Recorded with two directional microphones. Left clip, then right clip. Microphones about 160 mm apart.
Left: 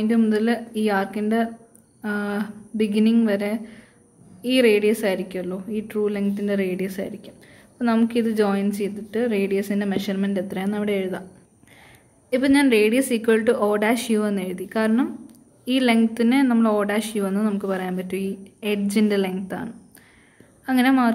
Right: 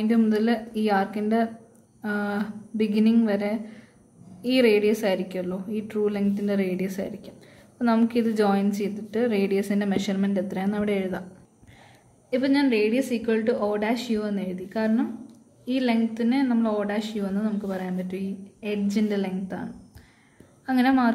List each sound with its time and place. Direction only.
0.0 s a woman's voice: 15° left (ahead or behind)
12.3 s a woman's voice: 30° left (ahead or behind)